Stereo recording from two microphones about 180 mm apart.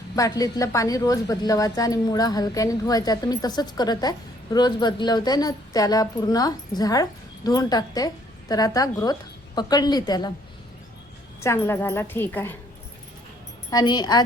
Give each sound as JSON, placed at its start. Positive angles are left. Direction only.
{"t": 0.2, "sound": "a woman's voice", "side_deg": 20}
{"t": 11.3, "sound": "a woman's voice", "side_deg": 15}
{"t": 13.7, "sound": "a woman's voice", "side_deg": 20}